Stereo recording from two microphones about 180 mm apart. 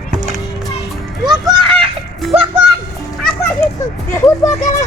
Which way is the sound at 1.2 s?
25° right (ahead or behind).